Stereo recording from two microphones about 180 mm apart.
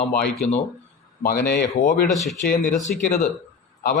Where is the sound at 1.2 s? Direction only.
55° left (ahead or behind).